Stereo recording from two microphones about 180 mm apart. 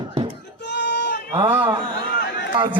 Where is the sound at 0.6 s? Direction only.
70° left (ahead or behind).